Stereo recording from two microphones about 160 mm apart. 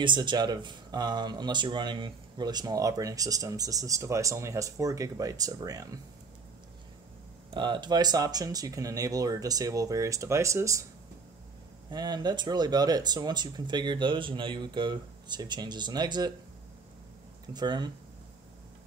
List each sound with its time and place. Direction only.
0.0 s speech: 30° right (ahead or behind)
7.5 s speech: 30° right (ahead or behind)
11.9 s speech: 25° right (ahead or behind)
17.5 s speech: 25° right (ahead or behind)